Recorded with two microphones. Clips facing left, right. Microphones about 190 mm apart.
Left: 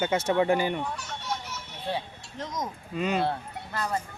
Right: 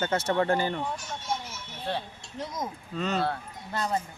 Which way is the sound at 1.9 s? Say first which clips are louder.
Left 1 dB; 15° left (ahead or behind).